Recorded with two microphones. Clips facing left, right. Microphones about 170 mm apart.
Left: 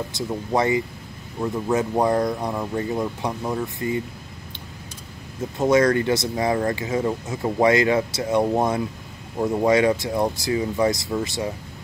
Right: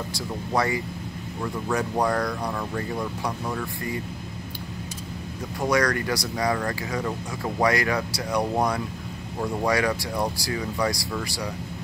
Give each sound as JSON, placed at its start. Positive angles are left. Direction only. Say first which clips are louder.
{"t": 0.1, "sound": "speech", "louder": "left 3 dB", "side_deg": 20}
{"t": 5.6, "sound": "speech", "louder": "left 6 dB", "side_deg": 25}